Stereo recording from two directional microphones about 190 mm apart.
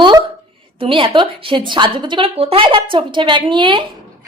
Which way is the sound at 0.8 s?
30° right (ahead or behind).